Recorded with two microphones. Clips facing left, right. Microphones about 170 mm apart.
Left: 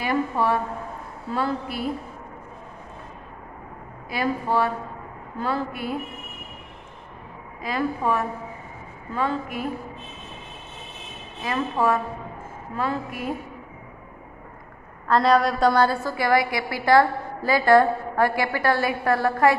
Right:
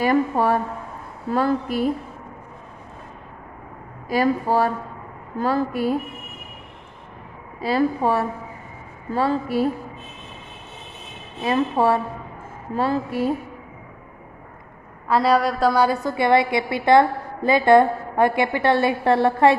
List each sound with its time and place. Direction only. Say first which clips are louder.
0.0 s a woman's voice: right 4 dB; 45° right (ahead or behind)
4.1 s a woman's voice: right 5 dB; 40° right (ahead or behind)
7.6 s a woman's voice: right 5 dB; 30° right (ahead or behind)
11.4 s a woman's voice: right 4 dB; 30° right (ahead or behind)
15.0 s a woman's voice: right 1 dB; 5° right (ahead or behind); by 19.5 s 25° right (ahead or behind)